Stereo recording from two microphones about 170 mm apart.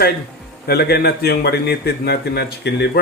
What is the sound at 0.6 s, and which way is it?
A man's voice, 70° left (ahead or behind).